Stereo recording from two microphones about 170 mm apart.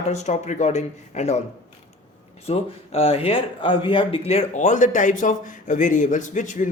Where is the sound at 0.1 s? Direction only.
40° left (ahead or behind).